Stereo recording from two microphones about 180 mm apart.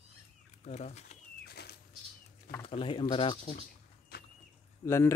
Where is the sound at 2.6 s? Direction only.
30° left (ahead or behind).